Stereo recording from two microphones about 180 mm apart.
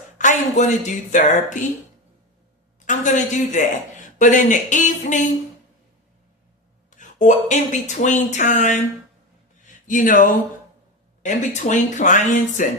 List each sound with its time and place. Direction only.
0.2 s speech: 45° left (ahead or behind)
2.8 s a man's voice: 45° left (ahead or behind)
6.9 s speech: 45° left (ahead or behind)
9.8 s speech: 45° left (ahead or behind)